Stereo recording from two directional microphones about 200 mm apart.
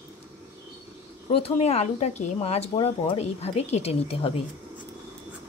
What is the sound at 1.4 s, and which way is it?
Speech, 30° left (ahead or behind).